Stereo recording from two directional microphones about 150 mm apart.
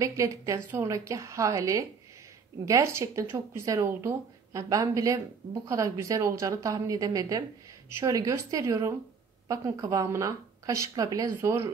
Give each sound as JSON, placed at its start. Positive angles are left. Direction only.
{"t": 0.0, "sound": "speech", "side_deg": -20}